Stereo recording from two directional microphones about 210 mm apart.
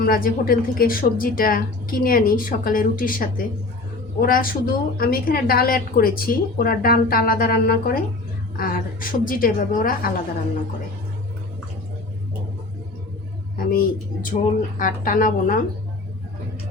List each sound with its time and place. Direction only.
0.0 s a woman's voice: 40° left (ahead or behind)
13.7 s a woman's voice: 40° left (ahead or behind)